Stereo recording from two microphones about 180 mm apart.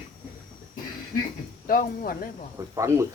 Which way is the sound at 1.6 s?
55° left (ahead or behind).